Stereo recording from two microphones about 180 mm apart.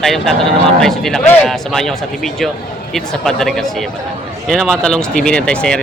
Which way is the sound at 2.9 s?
5° left (ahead or behind).